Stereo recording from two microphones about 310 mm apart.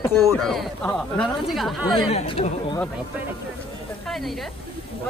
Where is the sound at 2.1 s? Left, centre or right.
Centre.